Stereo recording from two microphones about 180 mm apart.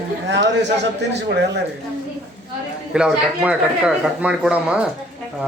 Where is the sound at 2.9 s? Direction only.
5° right (ahead or behind).